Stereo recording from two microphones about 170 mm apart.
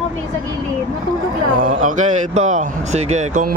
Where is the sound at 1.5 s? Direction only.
50° right (ahead or behind).